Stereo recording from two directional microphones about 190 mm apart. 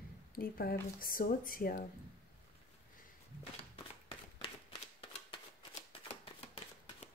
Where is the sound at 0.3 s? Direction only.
50° left (ahead or behind).